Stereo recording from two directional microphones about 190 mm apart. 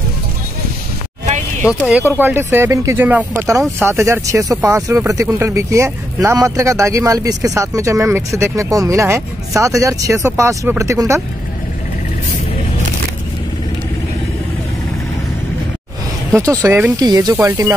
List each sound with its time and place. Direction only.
1.7 s speech: 5° right (ahead or behind)
16.3 s speech: 15° right (ahead or behind)